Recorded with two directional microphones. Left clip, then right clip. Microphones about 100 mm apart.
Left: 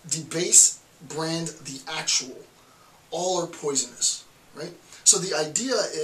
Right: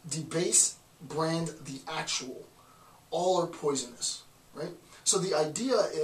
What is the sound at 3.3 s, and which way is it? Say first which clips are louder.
Speech: left 1 dB; 10° left (ahead or behind).